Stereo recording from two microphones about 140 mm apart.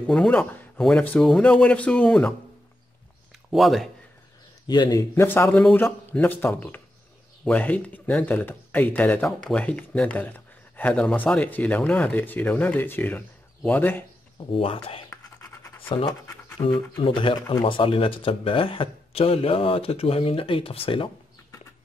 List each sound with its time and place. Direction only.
0.0 s speech: 10° left (ahead or behind)
3.4 s speech: centre (ahead or behind)
4.6 s speech: 30° left (ahead or behind)
5.1 s speech: 15° left (ahead or behind)
14.4 s speech: 40° left (ahead or behind)
15.0 s scratch: 15° left (ahead or behind)
16.1 s pant: 25° left (ahead or behind)
17.0 s speech: 35° left (ahead or behind)